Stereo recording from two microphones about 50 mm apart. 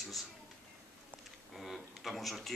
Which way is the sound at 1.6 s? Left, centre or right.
Centre.